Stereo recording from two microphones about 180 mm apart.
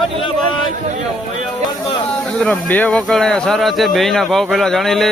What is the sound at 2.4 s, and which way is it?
Speech, 5° left (ahead or behind).